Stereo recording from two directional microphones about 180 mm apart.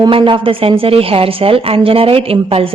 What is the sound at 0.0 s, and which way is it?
A woman's voice, 30° right (ahead or behind).